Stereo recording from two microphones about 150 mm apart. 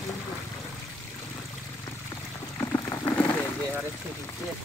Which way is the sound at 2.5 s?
20° left (ahead or behind).